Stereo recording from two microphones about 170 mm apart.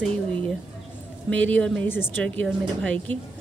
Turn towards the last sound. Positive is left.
turn(degrees=10)  # may be behind; listen again after turning